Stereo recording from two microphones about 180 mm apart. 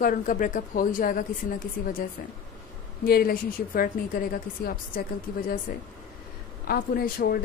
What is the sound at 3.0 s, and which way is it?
A woman's voice, 55° left (ahead or behind).